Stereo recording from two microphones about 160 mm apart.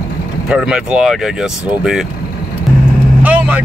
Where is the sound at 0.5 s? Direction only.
5° right (ahead or behind).